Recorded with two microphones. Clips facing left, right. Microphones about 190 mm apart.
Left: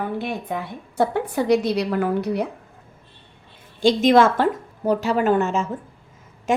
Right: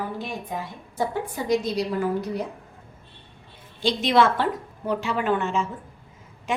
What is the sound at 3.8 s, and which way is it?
A woman's voice, 45° left (ahead or behind).